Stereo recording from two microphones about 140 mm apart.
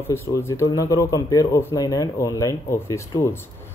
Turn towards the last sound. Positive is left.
turn(degrees=20)  # may be behind; listen again after turning